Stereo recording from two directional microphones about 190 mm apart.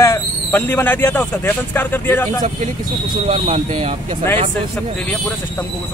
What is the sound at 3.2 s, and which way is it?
Speech, 30° right (ahead or behind).